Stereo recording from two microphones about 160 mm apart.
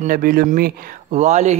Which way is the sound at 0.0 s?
60° right (ahead or behind).